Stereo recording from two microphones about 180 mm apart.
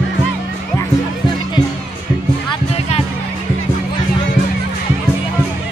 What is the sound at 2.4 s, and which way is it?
Music, 35° left (ahead or behind).